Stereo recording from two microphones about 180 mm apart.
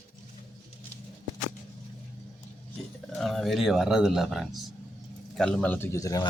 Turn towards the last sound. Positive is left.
turn(degrees=20)  # may be behind; listen again after turning